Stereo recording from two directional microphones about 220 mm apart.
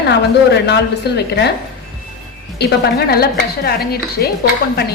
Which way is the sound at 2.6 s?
45° left (ahead or behind).